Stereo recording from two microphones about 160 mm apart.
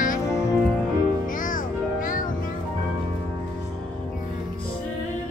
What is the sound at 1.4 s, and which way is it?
Music, 55° left (ahead or behind).